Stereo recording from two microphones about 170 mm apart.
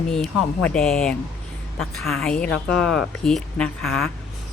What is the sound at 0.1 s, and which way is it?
Speech, centre (ahead or behind).